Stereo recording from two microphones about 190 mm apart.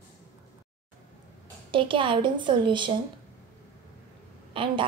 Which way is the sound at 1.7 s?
25° right (ahead or behind).